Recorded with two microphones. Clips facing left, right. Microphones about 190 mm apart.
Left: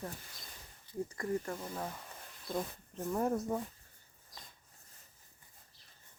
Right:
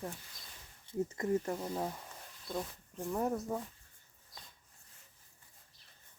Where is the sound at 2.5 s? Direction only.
Centre (ahead or behind).